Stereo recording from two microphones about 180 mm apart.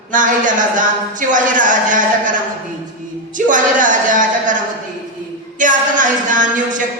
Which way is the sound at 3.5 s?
45° right (ahead or behind).